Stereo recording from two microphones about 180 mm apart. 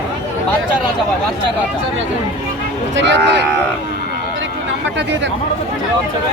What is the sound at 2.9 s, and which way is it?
Speech, 80° right.